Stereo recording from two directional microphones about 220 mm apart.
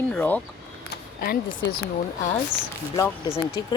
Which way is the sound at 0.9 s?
45° left (ahead or behind).